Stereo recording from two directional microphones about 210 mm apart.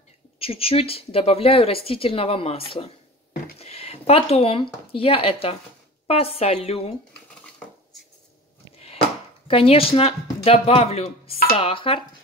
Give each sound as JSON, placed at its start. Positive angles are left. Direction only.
{"t": 0.4, "sound": "speech", "side_deg": 25}
{"t": 9.5, "sound": "speech", "side_deg": 25}